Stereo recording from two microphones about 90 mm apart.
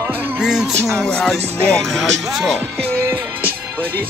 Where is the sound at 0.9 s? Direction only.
Centre (ahead or behind).